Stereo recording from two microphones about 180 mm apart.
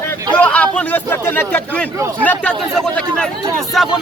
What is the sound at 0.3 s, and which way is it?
Speech, 5° left (ahead or behind).